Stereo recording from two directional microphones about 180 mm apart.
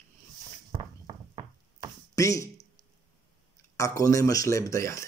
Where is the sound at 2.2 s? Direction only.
15° left (ahead or behind).